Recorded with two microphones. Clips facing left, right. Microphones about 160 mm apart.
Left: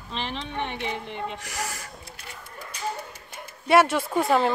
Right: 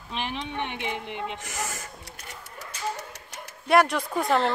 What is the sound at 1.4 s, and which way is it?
Speech, 50° right (ahead or behind).